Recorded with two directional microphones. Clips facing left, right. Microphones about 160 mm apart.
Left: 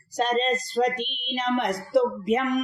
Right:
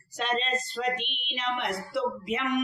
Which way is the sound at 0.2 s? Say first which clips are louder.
Left 6 dB; 40° left (ahead or behind).